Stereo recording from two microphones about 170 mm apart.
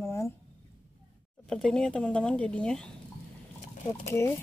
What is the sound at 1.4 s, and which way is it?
Speech, 5° left (ahead or behind).